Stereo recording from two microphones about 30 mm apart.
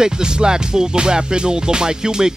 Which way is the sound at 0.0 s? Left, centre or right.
Right.